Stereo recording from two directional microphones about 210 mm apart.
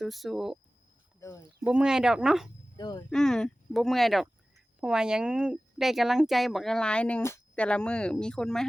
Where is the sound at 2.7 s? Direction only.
20° left (ahead or behind).